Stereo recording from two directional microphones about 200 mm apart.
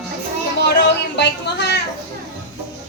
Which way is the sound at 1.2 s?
60° left (ahead or behind).